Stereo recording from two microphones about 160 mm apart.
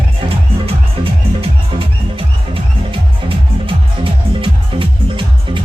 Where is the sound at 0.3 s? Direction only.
35° right (ahead or behind).